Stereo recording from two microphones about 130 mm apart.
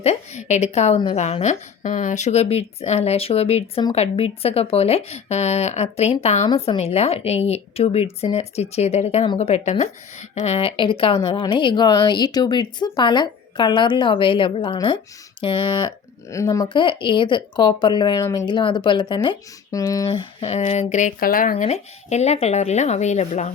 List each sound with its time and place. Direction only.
0.0 s a woman's voice: 60° left (ahead or behind); by 15.9 s 40° left (ahead or behind)
16.3 s speech: 25° left (ahead or behind)
16.6 s a woman's voice: 40° left (ahead or behind)
20.1 s speech: 50° left (ahead or behind)